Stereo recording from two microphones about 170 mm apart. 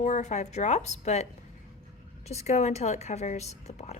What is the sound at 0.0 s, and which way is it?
A woman's voice, 45° left (ahead or behind).